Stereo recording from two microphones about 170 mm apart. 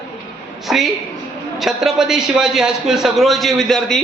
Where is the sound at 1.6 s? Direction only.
Centre (ahead or behind).